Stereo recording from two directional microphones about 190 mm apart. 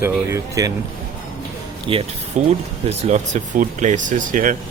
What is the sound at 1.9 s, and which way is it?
Speech, 30° right (ahead or behind).